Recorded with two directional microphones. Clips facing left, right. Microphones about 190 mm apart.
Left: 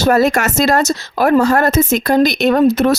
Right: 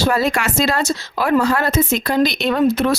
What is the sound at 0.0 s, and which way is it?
Speech, 45° left (ahead or behind).